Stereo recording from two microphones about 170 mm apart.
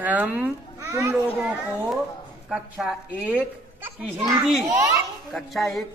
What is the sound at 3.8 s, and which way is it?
A child's voice, 20° right (ahead or behind).